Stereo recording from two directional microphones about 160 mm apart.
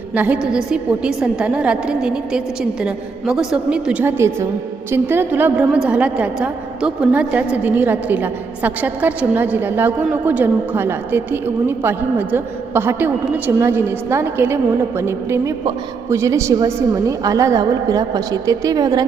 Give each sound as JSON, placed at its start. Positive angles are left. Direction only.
{"t": 0.1, "sound": "a woman's voice", "side_deg": -10}